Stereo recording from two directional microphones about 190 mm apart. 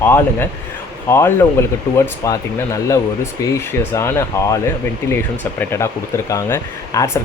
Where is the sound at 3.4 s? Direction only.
15° left (ahead or behind).